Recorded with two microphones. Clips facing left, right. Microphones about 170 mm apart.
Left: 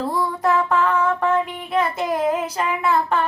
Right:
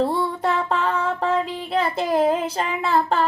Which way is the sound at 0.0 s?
30° right (ahead or behind).